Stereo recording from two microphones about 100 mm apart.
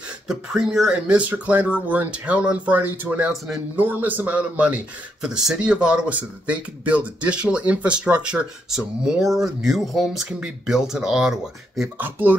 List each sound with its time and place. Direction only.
0.3 s speech: 5° right (ahead or behind)
12.0 s speech: 20° right (ahead or behind)